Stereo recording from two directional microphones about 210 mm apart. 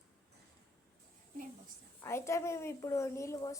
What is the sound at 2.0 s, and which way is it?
A woman's voice, 15° left (ahead or behind).